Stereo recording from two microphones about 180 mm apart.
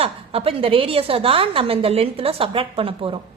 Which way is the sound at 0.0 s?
30° right (ahead or behind).